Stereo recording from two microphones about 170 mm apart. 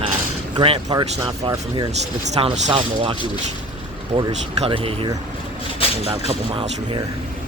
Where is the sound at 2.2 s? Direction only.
40° right (ahead or behind).